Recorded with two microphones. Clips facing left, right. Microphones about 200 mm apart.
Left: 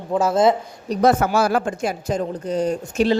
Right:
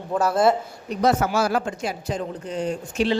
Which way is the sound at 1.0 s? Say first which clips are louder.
Left 3 dB; 55° left (ahead or behind).